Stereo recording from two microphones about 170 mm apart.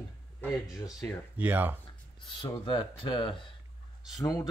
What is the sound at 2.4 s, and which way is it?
Speech, 30° left (ahead or behind).